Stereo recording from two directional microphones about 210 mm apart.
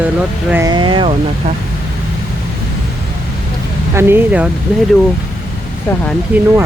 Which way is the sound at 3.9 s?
10° right (ahead or behind).